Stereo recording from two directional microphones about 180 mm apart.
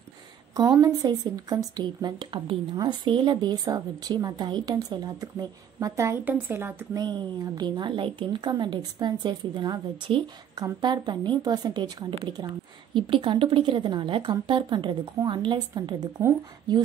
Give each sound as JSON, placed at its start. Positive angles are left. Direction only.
{"t": 0.7, "sound": "a woman's voice", "side_deg": -20}